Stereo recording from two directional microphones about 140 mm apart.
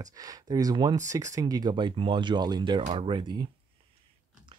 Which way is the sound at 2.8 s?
45° right (ahead or behind).